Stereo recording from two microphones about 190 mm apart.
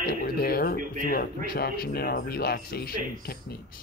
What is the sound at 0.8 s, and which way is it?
Speech, 45° right (ahead or behind).